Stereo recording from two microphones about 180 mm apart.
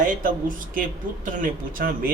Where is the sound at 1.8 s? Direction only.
55° right (ahead or behind).